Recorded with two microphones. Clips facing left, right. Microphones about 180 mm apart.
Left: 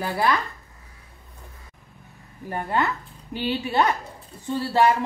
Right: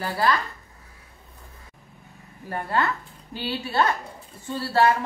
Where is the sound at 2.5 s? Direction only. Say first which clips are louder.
Left 1 dB; 20° left (ahead or behind).